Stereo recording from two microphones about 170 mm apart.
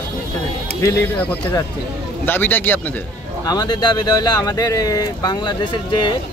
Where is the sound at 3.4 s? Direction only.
25° left (ahead or behind).